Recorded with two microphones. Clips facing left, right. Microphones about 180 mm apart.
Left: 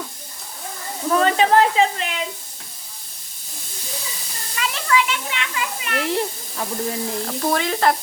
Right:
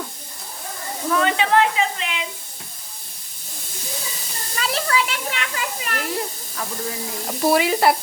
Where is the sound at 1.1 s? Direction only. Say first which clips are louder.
Left 3 dB; 35° left (ahead or behind).